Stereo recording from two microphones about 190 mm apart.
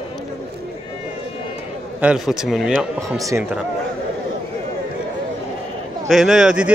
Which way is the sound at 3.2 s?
15° right (ahead or behind).